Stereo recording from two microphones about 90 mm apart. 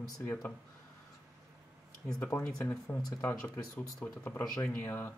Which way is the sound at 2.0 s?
10° left (ahead or behind).